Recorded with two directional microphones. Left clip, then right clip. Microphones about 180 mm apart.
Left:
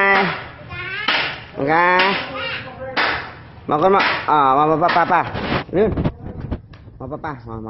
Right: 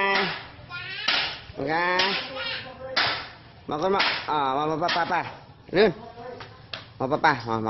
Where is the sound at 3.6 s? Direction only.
15° right (ahead or behind).